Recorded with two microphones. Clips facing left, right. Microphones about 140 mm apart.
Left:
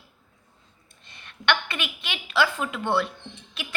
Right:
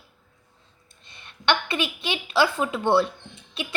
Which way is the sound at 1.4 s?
25° right (ahead or behind).